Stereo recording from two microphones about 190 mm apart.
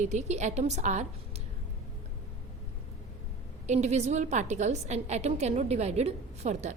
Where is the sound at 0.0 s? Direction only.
40° right (ahead or behind).